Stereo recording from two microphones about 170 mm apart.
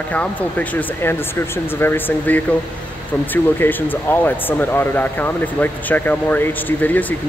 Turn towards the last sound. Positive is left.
turn(degrees=10)  # may be behind; listen again after turning